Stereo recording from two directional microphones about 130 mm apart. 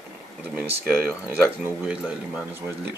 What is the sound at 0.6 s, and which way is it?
Speech, 10° right (ahead or behind).